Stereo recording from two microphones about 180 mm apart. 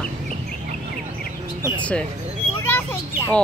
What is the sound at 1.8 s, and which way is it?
A child's voice, 5° left (ahead or behind).